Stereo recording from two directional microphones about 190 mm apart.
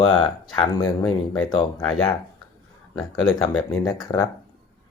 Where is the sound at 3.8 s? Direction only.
20° left (ahead or behind).